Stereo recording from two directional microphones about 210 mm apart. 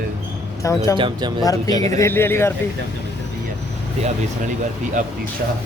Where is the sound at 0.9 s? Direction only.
25° right (ahead or behind).